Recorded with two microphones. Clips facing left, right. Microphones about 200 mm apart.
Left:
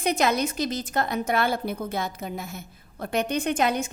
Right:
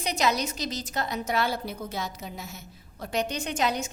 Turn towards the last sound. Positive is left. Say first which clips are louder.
# left 4 dB
turn(degrees=55)  # may be behind; listen again after turning